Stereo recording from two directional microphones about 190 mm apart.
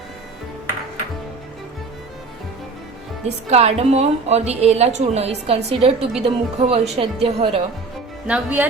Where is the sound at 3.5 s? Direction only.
35° right (ahead or behind).